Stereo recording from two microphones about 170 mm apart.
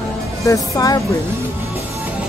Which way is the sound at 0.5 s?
20° left (ahead or behind).